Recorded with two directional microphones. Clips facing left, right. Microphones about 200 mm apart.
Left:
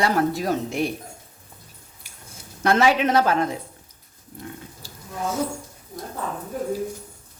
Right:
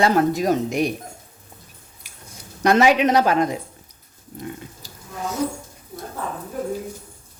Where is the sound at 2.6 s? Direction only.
15° right (ahead or behind).